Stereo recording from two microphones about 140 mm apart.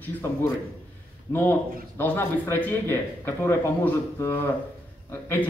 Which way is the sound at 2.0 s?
15° left (ahead or behind).